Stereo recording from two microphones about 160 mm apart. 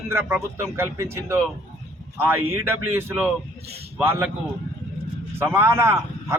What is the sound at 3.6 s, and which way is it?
Speech, 85° right.